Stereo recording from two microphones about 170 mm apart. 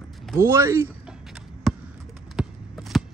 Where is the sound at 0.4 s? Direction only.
15° right (ahead or behind).